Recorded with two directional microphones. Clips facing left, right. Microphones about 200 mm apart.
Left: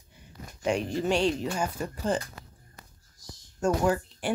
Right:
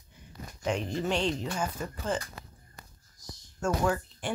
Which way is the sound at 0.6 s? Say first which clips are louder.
Left 3 dB; 10° left (ahead or behind).